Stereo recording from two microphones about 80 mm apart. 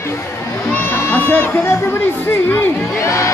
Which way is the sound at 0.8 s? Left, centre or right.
Left.